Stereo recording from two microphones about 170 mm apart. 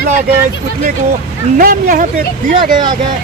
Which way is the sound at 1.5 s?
55° right (ahead or behind).